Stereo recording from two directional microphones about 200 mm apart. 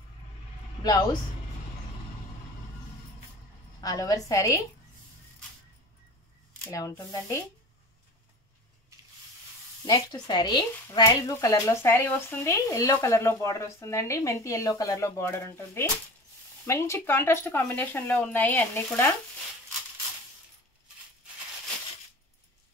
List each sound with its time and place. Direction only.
0.8 s speech: 20° left (ahead or behind)
3.8 s speech: 20° left (ahead or behind)
6.6 s speech: 15° left (ahead or behind)
9.8 s speech: 20° left (ahead or behind)